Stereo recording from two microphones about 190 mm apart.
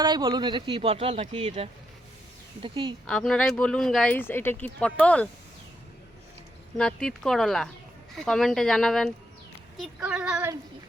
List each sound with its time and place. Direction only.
0.0 s speech: 25° right (ahead or behind)
3.1 s speech: 5° left (ahead or behind)
6.7 s speech: 5° left (ahead or behind)